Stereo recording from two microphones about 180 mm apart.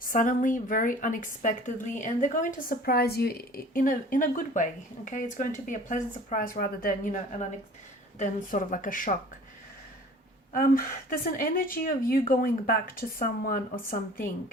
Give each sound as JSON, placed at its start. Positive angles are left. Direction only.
{"t": 0.0, "sound": "a woman's voice", "side_deg": 45}
{"t": 8.2, "sound": "a woman's voice", "side_deg": 45}
{"t": 10.5, "sound": "a woman's voice", "side_deg": 50}